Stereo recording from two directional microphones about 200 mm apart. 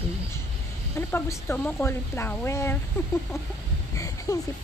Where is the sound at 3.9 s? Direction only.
15° left (ahead or behind).